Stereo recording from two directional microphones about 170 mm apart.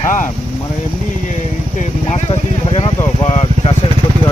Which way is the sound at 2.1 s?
35° left (ahead or behind).